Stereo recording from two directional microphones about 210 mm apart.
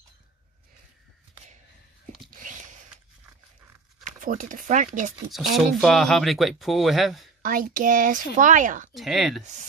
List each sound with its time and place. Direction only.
2.3 s a sound: 35° right (ahead or behind)
4.0 s speech: 40° right (ahead or behind)
5.3 s speech: centre (ahead or behind)
7.4 s speech: 40° right (ahead or behind)
8.9 s speech: centre (ahead or behind)